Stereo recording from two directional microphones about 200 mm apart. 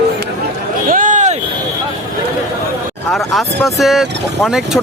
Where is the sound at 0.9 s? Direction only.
40° right (ahead or behind).